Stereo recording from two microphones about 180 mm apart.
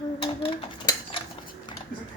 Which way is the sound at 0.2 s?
30° left (ahead or behind).